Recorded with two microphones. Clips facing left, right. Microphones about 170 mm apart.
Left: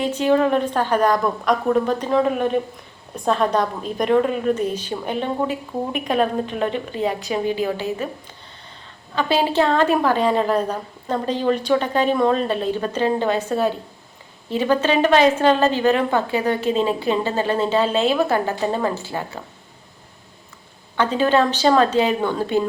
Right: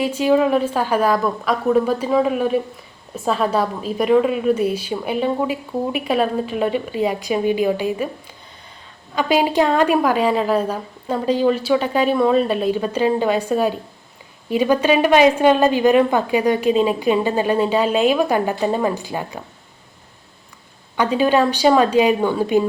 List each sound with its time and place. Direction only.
0.0 s a woman's voice: 10° right (ahead or behind)
9.1 s a woman's voice: 15° right (ahead or behind)
20.9 s a woman's voice: 10° right (ahead or behind)